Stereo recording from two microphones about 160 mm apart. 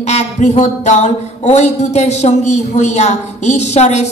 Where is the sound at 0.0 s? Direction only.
45° left (ahead or behind).